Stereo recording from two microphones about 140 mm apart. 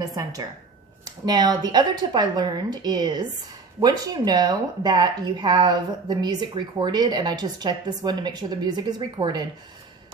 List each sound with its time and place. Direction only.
0.0 s a woman's voice: 25° right (ahead or behind)